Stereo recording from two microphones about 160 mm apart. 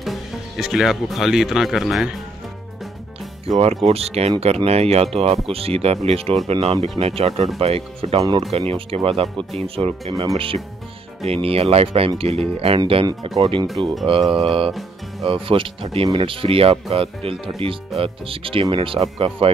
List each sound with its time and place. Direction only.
0.0 s speech: centre (ahead or behind)
3.4 s speech: 40° right (ahead or behind)
14.7 s music: centre (ahead or behind)
15.2 s speech: 35° right (ahead or behind)